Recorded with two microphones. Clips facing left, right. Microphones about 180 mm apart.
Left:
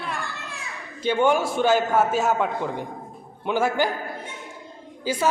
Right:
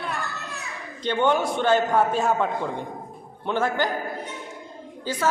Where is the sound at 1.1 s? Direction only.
10° left (ahead or behind).